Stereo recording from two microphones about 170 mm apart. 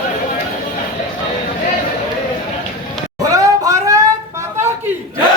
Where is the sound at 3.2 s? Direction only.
20° right (ahead or behind).